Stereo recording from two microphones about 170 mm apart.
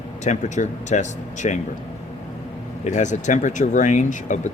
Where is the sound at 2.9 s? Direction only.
45° left (ahead or behind).